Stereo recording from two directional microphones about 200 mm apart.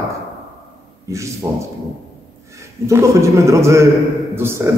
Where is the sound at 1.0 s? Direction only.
15° right (ahead or behind).